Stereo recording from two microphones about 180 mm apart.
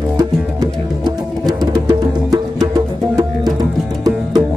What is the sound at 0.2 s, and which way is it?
Music, 20° right (ahead or behind).